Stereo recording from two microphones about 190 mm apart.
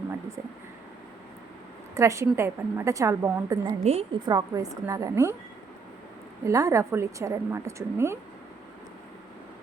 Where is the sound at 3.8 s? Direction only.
35° right (ahead or behind).